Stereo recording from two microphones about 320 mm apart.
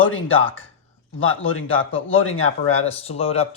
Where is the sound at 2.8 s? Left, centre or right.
Centre.